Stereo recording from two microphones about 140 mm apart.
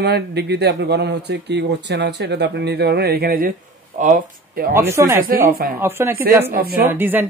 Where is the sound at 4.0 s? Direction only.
70° right (ahead or behind).